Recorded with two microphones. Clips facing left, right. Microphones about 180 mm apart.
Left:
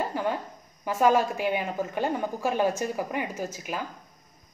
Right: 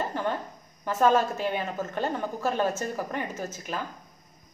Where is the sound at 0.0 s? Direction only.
10° left (ahead or behind).